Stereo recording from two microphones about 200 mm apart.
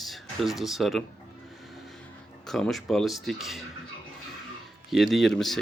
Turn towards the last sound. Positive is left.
turn(degrees=0)  # may be behind; listen again after turning